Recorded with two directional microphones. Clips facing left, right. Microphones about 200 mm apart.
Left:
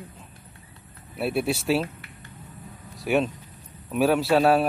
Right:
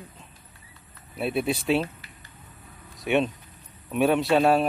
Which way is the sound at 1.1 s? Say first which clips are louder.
Left 1 dB; 5° left (ahead or behind).